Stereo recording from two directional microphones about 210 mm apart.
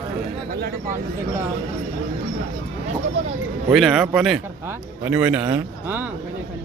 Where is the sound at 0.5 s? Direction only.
45° right (ahead or behind).